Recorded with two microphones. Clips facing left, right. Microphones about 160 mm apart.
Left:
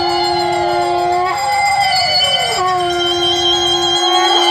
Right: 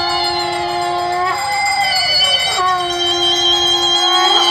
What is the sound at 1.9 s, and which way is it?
Music, 45° left (ahead or behind).